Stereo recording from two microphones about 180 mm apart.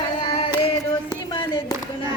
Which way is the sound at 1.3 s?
25° left (ahead or behind).